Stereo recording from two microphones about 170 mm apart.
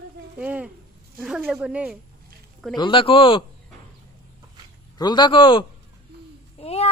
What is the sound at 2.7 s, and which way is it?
Speech, 30° left (ahead or behind).